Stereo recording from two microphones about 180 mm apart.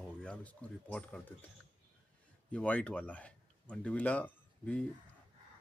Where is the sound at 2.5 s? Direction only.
5° left (ahead or behind).